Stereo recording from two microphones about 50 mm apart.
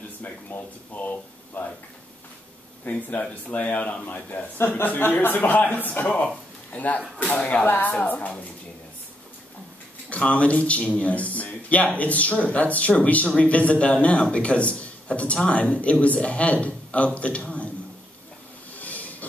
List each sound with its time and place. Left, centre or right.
0.2 s speech: left
2.8 s a man's voice: left
6.0 s a man's voice: left
10.0 s speech: left
18.7 s a sound: left